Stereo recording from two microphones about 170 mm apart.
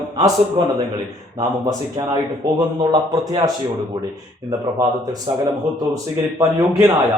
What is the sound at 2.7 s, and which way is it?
Speech, 20° right (ahead or behind).